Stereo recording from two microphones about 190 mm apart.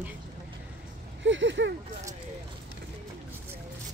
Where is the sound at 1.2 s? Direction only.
75° right (ahead or behind).